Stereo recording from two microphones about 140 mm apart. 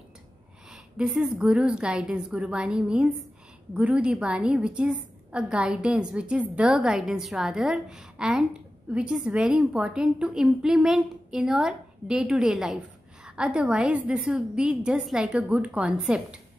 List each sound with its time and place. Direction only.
0.7 s a woman's voice: 5° right (ahead or behind)